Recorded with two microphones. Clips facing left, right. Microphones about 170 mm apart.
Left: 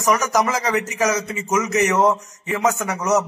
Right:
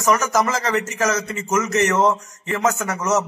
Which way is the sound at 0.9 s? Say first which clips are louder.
Left 1 dB; centre (ahead or behind).